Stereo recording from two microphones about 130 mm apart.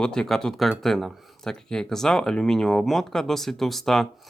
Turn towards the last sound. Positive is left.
turn(degrees=0)  # may be behind; listen again after turning